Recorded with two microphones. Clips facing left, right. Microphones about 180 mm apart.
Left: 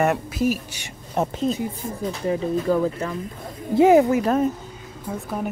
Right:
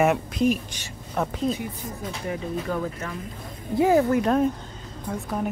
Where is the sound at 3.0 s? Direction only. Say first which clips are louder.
Left 6 dB; 35° left (ahead or behind).